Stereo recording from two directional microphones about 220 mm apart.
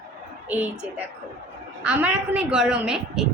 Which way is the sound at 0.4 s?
5° right (ahead or behind).